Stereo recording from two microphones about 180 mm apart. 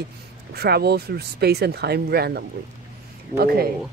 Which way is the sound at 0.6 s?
60° right (ahead or behind).